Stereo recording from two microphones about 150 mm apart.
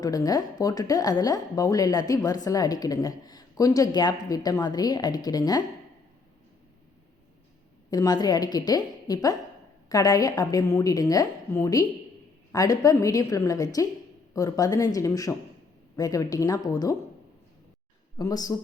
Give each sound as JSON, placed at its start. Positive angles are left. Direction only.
{"t": 0.0, "sound": "a woman's voice", "side_deg": 25}
{"t": 7.9, "sound": "a woman's voice", "side_deg": 25}
{"t": 18.2, "sound": "a woman's voice", "side_deg": 25}